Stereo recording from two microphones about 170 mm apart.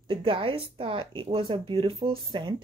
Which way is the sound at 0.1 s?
30° right (ahead or behind).